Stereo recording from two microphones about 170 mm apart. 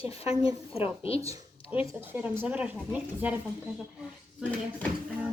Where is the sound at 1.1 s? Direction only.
35° left (ahead or behind).